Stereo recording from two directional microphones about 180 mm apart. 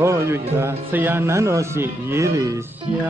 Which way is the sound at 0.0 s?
15° right (ahead or behind).